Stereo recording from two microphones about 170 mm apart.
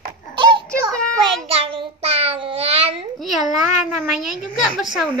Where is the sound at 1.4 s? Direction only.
35° right (ahead or behind).